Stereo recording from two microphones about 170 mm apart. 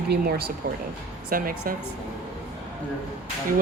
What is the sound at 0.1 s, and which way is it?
Speech, 70° right (ahead or behind).